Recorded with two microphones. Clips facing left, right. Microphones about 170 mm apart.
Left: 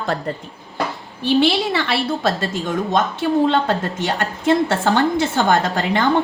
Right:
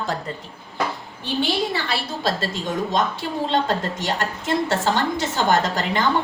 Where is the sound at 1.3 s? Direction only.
80° left.